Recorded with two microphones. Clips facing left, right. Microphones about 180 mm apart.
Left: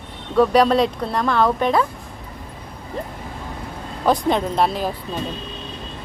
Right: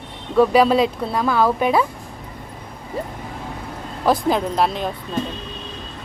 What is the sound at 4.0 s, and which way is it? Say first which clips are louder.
Speech: even; 5° right (ahead or behind).